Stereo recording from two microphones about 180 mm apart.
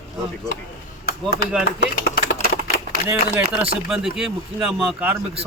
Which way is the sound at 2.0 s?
60° left (ahead or behind).